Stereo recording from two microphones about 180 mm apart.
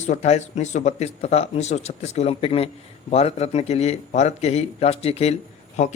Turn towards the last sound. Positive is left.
turn(degrees=35)  # may be behind; listen again after turning